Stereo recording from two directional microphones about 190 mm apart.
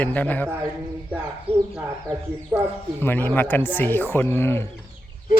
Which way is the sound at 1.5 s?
30° right (ahead or behind).